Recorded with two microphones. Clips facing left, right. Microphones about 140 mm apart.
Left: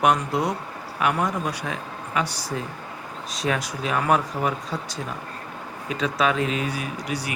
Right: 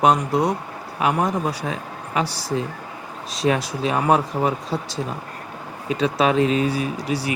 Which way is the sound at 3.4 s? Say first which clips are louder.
Right 5 dB; 30° right (ahead or behind).